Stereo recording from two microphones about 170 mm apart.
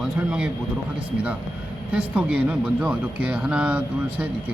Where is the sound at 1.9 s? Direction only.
10° right (ahead or behind).